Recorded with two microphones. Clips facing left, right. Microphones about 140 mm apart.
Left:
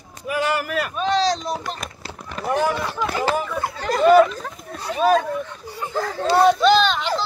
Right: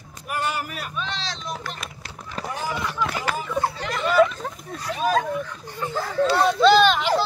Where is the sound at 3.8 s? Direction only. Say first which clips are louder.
Left 7 dB; 40° left (ahead or behind).